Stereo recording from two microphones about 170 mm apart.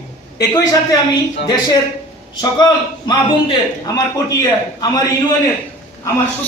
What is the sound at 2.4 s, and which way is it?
A man's voice, 25° left (ahead or behind).